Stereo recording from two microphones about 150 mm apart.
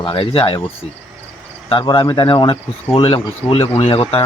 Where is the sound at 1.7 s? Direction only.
30° left (ahead or behind).